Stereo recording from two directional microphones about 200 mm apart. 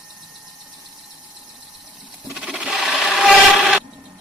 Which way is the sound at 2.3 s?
5° right (ahead or behind).